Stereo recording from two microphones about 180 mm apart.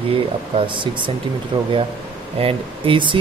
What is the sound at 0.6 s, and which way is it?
Speech, 25° right (ahead or behind).